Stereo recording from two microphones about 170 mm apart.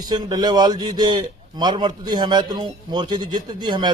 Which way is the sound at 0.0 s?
25° right (ahead or behind).